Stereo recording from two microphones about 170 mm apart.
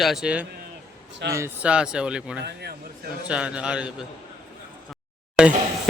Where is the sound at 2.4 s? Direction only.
75° right (ahead or behind).